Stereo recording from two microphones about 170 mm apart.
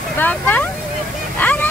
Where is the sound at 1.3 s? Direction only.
10° left (ahead or behind).